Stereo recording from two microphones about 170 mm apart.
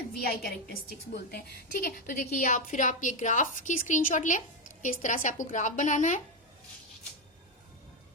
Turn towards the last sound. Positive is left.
turn(degrees=45)  # may be behind; listen again after turning